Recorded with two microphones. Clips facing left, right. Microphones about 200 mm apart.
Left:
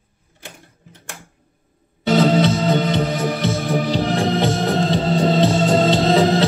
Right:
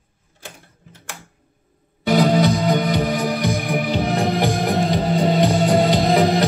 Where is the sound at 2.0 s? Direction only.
15° right (ahead or behind).